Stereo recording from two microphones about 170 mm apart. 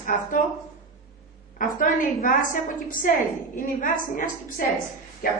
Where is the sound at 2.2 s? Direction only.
50° left (ahead or behind).